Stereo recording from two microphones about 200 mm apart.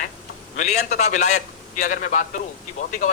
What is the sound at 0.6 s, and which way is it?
A man's voice, 35° left (ahead or behind).